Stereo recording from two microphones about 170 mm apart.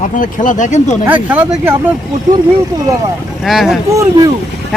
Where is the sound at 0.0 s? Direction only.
50° left (ahead or behind).